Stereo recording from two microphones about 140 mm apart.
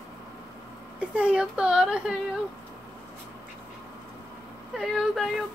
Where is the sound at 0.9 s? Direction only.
10° right (ahead or behind).